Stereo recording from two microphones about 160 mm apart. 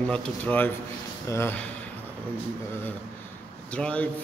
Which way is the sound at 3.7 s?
10° left (ahead or behind).